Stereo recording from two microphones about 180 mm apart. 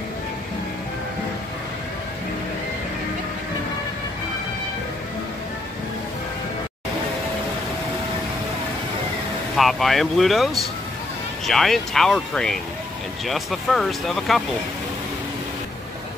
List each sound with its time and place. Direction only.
9.6 s speech: centre (ahead or behind)